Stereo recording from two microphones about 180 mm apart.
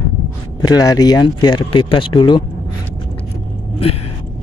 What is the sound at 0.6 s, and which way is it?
Speech, 20° left (ahead or behind).